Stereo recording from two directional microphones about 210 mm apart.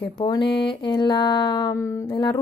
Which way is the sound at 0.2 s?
20° left (ahead or behind).